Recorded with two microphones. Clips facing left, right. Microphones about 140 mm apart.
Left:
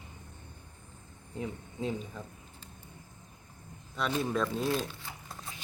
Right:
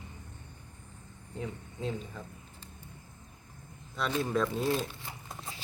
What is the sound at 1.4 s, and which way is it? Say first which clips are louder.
Speech: left 2 dB; 15° left (ahead or behind).